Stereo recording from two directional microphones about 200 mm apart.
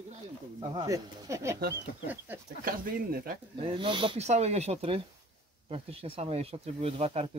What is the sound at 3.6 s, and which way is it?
Speech, 25° right (ahead or behind).